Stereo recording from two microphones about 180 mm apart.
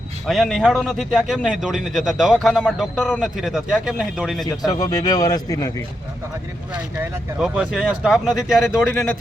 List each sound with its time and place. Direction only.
0.3 s a man's voice: centre (ahead or behind)
4.4 s a man's voice: 20° left (ahead or behind)
6.7 s a man's voice: 5° right (ahead or behind)